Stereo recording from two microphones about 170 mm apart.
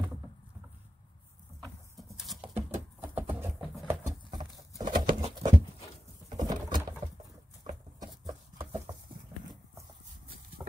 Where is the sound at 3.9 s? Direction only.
20° right (ahead or behind).